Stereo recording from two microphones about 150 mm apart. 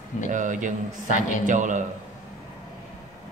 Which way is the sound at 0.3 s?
60° right (ahead or behind).